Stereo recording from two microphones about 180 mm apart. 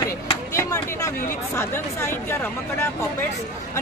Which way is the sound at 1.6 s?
15° left (ahead or behind).